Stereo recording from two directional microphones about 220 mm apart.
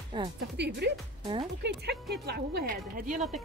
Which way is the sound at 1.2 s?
25° right (ahead or behind).